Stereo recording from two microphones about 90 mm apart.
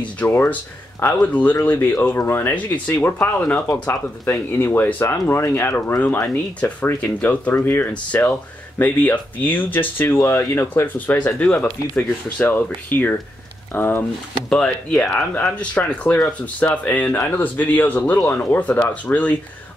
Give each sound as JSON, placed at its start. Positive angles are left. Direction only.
{"t": 0.3, "sound": "speech", "side_deg": 25}
{"t": 6.2, "sound": "speech", "side_deg": 15}
{"t": 14.5, "sound": "speech", "side_deg": 10}